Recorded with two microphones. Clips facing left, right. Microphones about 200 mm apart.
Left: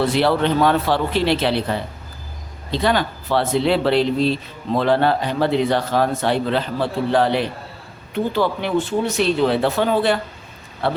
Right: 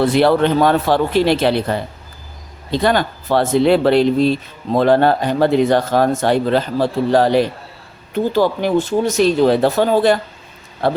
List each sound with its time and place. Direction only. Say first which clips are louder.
0.1 s speech: right 4 dB; 50° right (ahead or behind)